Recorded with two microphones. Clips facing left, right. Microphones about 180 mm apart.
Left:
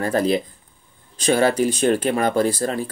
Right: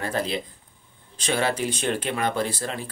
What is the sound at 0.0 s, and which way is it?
Speech, 45° left (ahead or behind).